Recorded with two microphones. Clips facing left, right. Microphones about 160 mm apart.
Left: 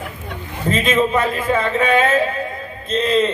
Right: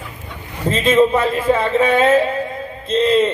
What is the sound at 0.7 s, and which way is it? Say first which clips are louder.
A man's voice: right 4 dB; 30° right (ahead or behind).